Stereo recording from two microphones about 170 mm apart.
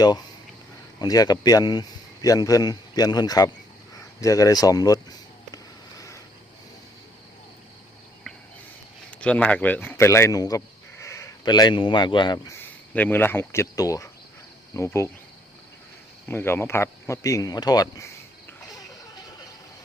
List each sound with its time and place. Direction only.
0.9 s a man's voice: 20° left (ahead or behind)
9.0 s speech: 5° left (ahead or behind)
16.3 s speech: 15° left (ahead or behind)